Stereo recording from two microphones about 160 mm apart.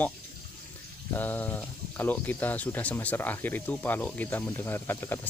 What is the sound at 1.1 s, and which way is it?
Speech, 10° left (ahead or behind).